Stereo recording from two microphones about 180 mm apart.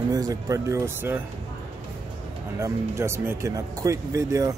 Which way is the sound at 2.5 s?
15° right (ahead or behind).